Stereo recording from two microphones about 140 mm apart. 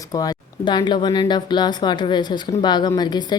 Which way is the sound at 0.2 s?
30° left (ahead or behind).